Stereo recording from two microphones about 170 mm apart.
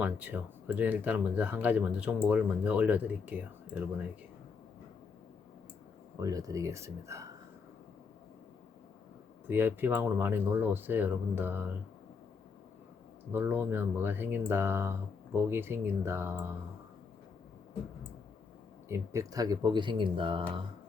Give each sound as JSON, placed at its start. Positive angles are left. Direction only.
{"t": 0.0, "sound": "speech", "side_deg": -10}
{"t": 6.1, "sound": "speech", "side_deg": -20}
{"t": 9.5, "sound": "speech", "side_deg": -10}
{"t": 13.3, "sound": "speech", "side_deg": -10}
{"t": 18.9, "sound": "speech", "side_deg": -20}